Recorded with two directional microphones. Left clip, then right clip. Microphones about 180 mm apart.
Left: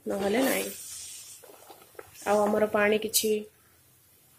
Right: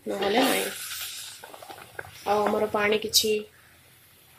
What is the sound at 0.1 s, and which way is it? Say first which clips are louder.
Speech: right 3 dB; 15° left (ahead or behind).